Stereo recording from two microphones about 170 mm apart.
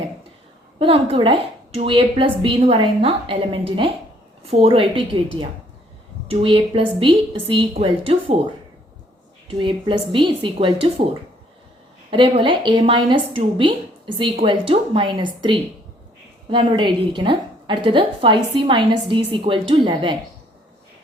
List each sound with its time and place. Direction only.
0.8 s a woman's voice: 35° right (ahead or behind)
9.6 s a woman's voice: 30° right (ahead or behind)